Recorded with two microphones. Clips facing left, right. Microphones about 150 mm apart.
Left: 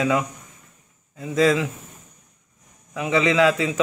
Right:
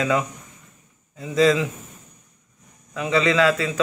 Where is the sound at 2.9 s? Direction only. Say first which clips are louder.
Even; 15° left (ahead or behind).